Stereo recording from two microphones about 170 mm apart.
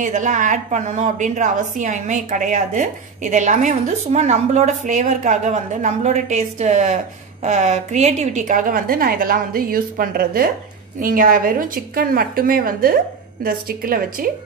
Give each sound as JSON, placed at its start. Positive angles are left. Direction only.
{"t": 0.0, "sound": "a woman's voice", "side_deg": -45}